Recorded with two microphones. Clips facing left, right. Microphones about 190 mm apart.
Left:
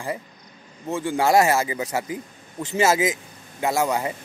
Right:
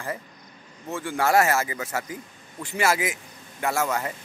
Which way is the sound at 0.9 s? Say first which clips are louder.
Left 3 dB; 15° left (ahead or behind).